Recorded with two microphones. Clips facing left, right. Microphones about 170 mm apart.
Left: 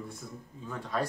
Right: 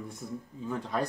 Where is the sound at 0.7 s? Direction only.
20° right (ahead or behind).